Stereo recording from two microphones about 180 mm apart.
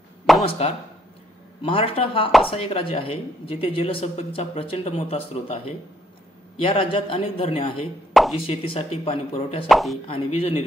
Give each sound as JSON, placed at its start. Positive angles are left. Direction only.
{"t": 0.5, "sound": "speech", "side_deg": 30}
{"t": 8.1, "sound": "plop", "side_deg": 0}
{"t": 8.4, "sound": "speech", "side_deg": 35}
{"t": 9.7, "sound": "speech", "side_deg": 0}
{"t": 10.0, "sound": "speech", "side_deg": 30}